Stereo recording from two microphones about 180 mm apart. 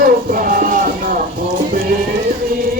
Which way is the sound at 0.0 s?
50° right (ahead or behind).